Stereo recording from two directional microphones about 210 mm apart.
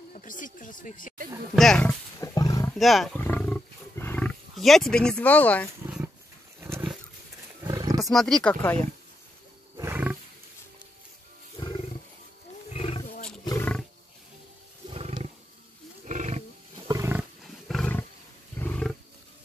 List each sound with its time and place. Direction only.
0.1 s speech: 40° left (ahead or behind)
1.5 s roaring cats: centre (ahead or behind)
2.7 s speech: centre (ahead or behind)
3.2 s roaring cats: 10° left (ahead or behind)
6.6 s roaring cats: 10° right (ahead or behind)
8.0 s speech: centre (ahead or behind)
9.8 s roaring cats: 10° right (ahead or behind)
11.6 s roaring cats: 20° left (ahead or behind)
13.5 s roaring cats: 10° left (ahead or behind)
14.9 s roaring cats: 25° right (ahead or behind)
16.8 s roaring cats: 15° right (ahead or behind)
17.6 s roar: 5° left (ahead or behind)
18.6 s roaring cats: 5° left (ahead or behind)